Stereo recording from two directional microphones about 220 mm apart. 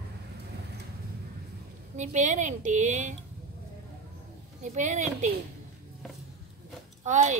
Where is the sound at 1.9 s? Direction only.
35° right (ahead or behind).